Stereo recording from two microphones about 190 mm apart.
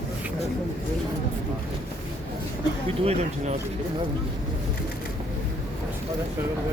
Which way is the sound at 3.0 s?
35° right (ahead or behind).